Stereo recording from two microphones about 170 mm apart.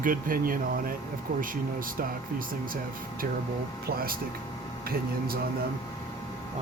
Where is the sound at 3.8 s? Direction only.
60° right (ahead or behind).